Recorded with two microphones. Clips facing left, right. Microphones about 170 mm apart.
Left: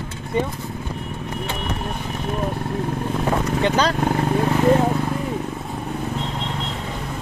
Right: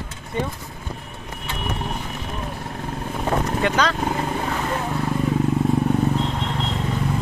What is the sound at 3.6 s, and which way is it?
Speech, 35° left (ahead or behind).